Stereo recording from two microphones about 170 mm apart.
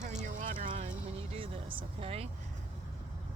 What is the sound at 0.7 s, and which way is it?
Speech, 40° right (ahead or behind).